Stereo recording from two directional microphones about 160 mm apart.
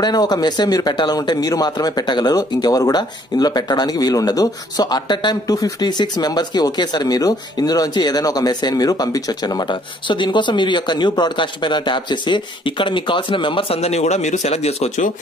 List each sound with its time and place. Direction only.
0.0 s speech: 25° left (ahead or behind); by 15.0 s 40° left (ahead or behind)